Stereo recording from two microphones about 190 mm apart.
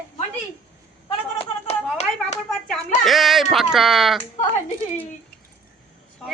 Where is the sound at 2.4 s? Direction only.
5° left (ahead or behind).